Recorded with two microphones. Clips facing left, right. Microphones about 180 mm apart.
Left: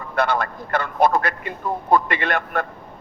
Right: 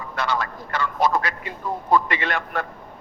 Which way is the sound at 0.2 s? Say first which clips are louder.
Left 4 dB; 55° left (ahead or behind).